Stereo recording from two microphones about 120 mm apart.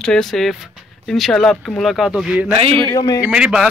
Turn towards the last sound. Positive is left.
turn(degrees=-5)  # may be behind; listen again after turning